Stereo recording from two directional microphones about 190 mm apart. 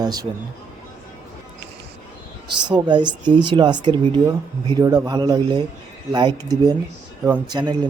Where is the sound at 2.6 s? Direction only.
25° right (ahead or behind).